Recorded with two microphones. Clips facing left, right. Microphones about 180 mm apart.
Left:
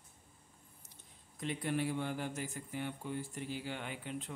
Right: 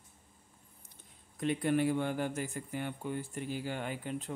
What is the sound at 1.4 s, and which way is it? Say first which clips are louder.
A man's voice: right 6 dB; 55° right (ahead or behind).